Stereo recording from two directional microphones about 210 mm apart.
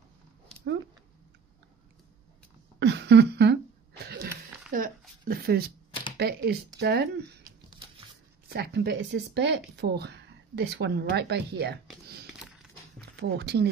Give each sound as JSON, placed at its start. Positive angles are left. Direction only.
{"t": 2.8, "sound": "a sound", "side_deg": -55}
{"t": 6.1, "sound": "speech", "side_deg": -50}
{"t": 8.5, "sound": "speech", "side_deg": -50}